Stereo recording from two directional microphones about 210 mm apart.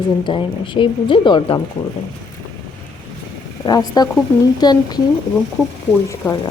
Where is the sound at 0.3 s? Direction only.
25° left (ahead or behind).